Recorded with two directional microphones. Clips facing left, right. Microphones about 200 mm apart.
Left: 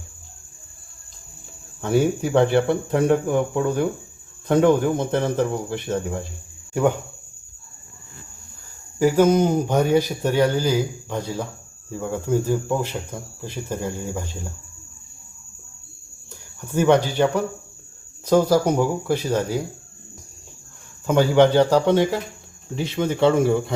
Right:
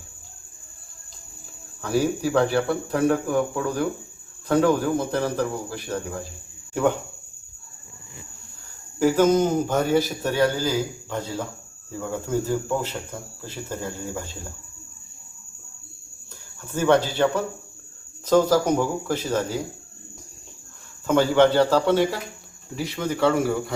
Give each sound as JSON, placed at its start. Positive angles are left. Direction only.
{"t": 1.8, "sound": "cricket", "side_deg": 25}
{"t": 9.0, "sound": "speech", "side_deg": 10}
{"t": 16.6, "sound": "speech", "side_deg": 15}
{"t": 21.1, "sound": "speech", "side_deg": 15}
{"t": 22.7, "sound": "cricket", "side_deg": 25}